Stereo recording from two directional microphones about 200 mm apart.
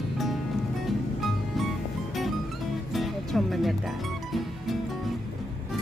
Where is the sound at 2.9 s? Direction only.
Centre (ahead or behind).